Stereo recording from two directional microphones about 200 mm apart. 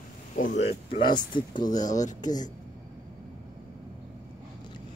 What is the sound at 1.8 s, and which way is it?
Speech, 40° left (ahead or behind).